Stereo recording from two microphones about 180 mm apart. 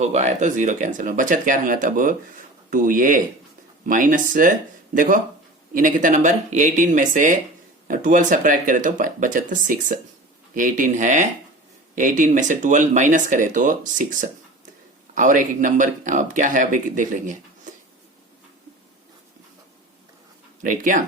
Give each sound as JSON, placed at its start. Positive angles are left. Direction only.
{"t": 0.0, "sound": "speech", "side_deg": -40}
{"t": 20.6, "sound": "speech", "side_deg": -45}